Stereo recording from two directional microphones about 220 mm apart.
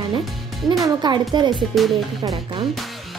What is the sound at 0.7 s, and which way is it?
Speech, 15° right (ahead or behind).